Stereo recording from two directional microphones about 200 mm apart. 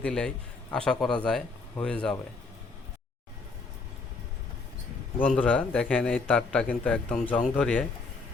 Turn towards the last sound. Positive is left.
turn(degrees=5)  # may be behind; listen again after turning